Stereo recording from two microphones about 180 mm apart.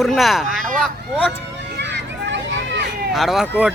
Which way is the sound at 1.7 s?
75° right (ahead or behind).